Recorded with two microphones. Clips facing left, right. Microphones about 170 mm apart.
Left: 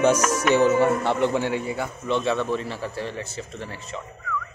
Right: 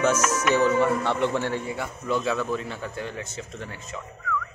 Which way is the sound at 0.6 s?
25° left (ahead or behind).